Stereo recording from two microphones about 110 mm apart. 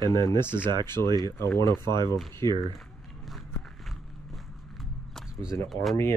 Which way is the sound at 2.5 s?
Centre (ahead or behind).